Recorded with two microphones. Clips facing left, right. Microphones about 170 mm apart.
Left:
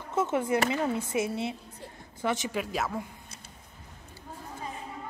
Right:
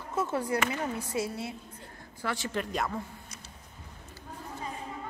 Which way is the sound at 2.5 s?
5° left (ahead or behind).